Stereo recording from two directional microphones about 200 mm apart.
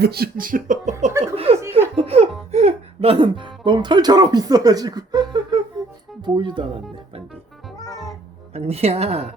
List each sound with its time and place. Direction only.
0.0 s speech: 50° right (ahead or behind)
1.2 s speech: 30° right (ahead or behind)
8.5 s a woman's voice: 30° right (ahead or behind)